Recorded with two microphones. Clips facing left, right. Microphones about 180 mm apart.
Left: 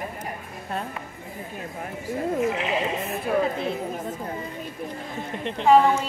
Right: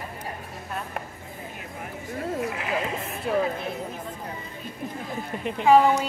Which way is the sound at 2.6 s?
20° left (ahead or behind).